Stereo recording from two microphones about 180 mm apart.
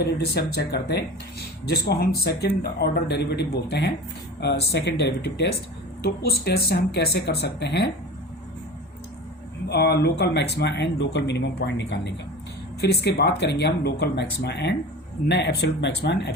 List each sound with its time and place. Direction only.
0.0 s speech: 65° left (ahead or behind)
6.0 s speech: 60° left (ahead or behind)
9.6 s speech: 65° left (ahead or behind)